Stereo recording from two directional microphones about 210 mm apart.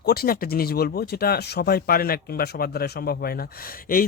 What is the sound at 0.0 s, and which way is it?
A man's voice, 45° left (ahead or behind).